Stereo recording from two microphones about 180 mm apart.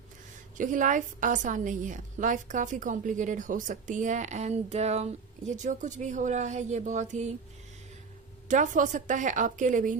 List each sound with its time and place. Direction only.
0.5 s a woman's voice: 45° right (ahead or behind)
8.4 s a woman's voice: 45° right (ahead or behind)